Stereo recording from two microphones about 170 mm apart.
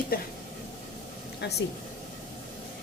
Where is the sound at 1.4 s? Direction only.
90° left.